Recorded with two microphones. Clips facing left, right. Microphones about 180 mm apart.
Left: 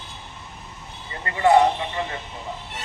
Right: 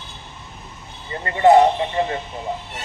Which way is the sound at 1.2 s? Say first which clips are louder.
Right 4 dB; 30° right (ahead or behind).